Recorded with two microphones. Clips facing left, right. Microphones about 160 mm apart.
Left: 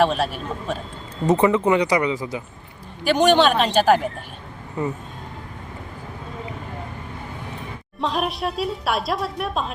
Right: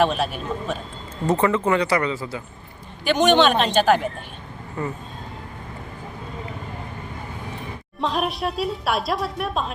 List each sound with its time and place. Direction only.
0.0 s a woman's voice: centre (ahead or behind)
1.3 s speech: 15° left (ahead or behind)
3.2 s a woman's voice: 5° left (ahead or behind)
4.8 s speech: 15° left (ahead or behind)
8.0 s a woman's voice: centre (ahead or behind)